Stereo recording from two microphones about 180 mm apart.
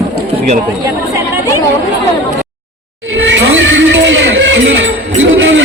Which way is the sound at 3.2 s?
90° right.